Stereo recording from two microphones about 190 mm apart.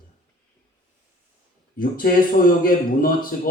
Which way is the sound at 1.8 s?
50° left (ahead or behind).